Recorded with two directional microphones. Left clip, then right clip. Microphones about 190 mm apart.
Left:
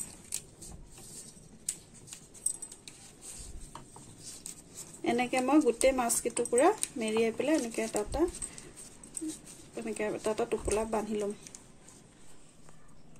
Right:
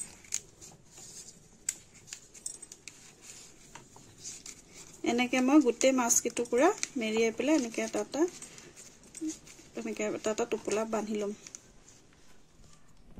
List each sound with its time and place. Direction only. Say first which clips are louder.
5.0 s speech: even; 50° right (ahead or behind)
9.8 s speech: even; 50° right (ahead or behind)